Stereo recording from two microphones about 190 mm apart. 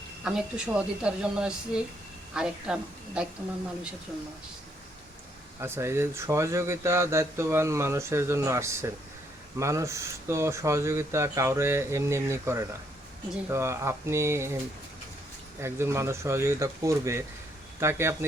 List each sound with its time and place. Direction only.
0.3 s a woman's voice: 5° right (ahead or behind)
5.5 s speech: 15° right (ahead or behind)
15.6 s speech: 15° right (ahead or behind)